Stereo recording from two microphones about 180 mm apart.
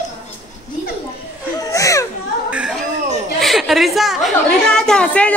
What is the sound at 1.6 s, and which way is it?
Children playing, 15° left (ahead or behind).